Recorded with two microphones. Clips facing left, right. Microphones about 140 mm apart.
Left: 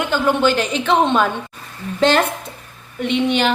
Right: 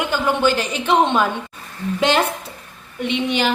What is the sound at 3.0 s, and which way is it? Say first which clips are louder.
Speech: left 3 dB; 55° left (ahead or behind).